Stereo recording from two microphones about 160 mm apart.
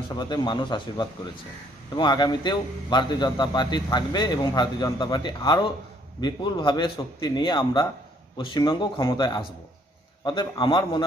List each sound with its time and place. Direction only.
0.1 s a man's voice: 30° left (ahead or behind)